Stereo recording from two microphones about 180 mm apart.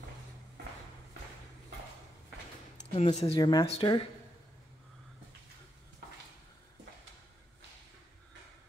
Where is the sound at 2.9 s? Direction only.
35° left (ahead or behind).